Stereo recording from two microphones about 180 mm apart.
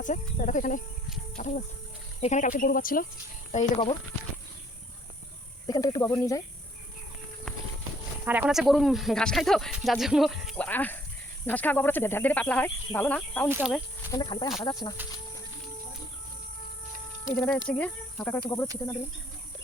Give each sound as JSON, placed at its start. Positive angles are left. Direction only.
{"t": 0.0, "sound": "speech", "side_deg": 45}
{"t": 5.6, "sound": "speech", "side_deg": 20}
{"t": 8.2, "sound": "speech", "side_deg": -10}
{"t": 13.5, "sound": "speech", "side_deg": -10}
{"t": 14.1, "sound": "speech", "side_deg": 25}
{"t": 17.3, "sound": "speech", "side_deg": 5}
{"t": 18.4, "sound": "speech", "side_deg": 20}